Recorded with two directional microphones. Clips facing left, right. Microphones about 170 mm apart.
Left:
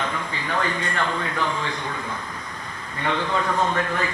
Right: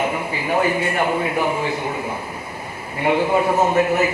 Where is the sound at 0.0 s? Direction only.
10° right (ahead or behind).